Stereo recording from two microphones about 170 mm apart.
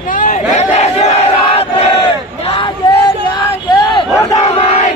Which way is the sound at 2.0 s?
30° left (ahead or behind).